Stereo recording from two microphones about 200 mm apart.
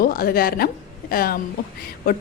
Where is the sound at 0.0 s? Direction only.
45° left (ahead or behind).